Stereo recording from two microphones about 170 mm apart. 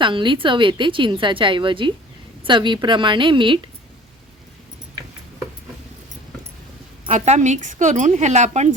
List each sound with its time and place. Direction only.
0.0 s a woman's voice: 30° right (ahead or behind)
7.1 s a woman's voice: 45° right (ahead or behind)